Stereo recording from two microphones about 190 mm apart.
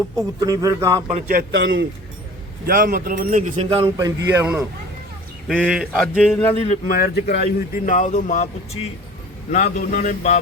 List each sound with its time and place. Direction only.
0.2 s a man's voice: 15° right (ahead or behind)
1.1 s speech: 50° right (ahead or behind)
1.5 s speech: 70° right (ahead or behind)
2.6 s speech: 50° right (ahead or behind); by 3.8 s 35° right (ahead or behind)
3.8 s a man's voice: 15° right (ahead or behind)
5.5 s speech: centre (ahead or behind)
6.7 s speech: 50° left (ahead or behind)
9.6 s mantra: 45° left (ahead or behind)